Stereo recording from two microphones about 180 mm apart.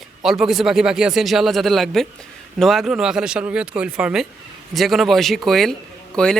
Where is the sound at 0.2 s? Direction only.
Centre (ahead or behind).